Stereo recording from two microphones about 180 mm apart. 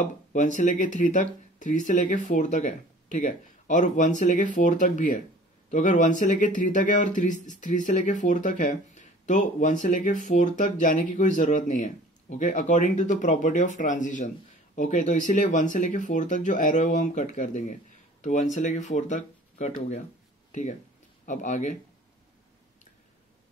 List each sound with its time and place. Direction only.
0.0 s speech: 45° left (ahead or behind)
21.3 s speech: 45° left (ahead or behind)